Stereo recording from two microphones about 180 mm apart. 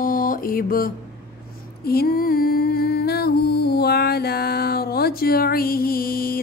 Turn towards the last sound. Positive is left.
turn(degrees=55)  # may be behind; listen again after turning